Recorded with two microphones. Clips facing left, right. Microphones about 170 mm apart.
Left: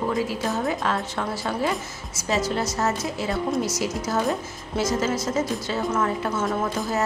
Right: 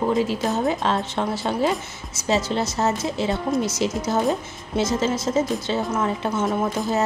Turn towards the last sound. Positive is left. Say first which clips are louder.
# right 2 dB
turn(degrees=-20)  # may be behind; listen again after turning